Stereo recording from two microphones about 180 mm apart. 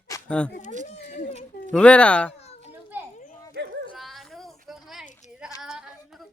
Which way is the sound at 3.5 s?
75° right (ahead or behind).